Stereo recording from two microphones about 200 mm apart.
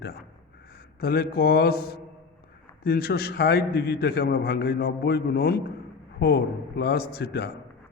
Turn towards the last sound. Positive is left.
turn(degrees=55)  # may be behind; listen again after turning